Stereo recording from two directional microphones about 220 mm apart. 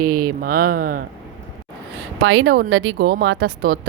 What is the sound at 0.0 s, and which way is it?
A woman's voice, 40° right (ahead or behind).